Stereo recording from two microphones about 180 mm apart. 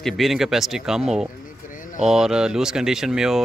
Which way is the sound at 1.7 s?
50° left (ahead or behind).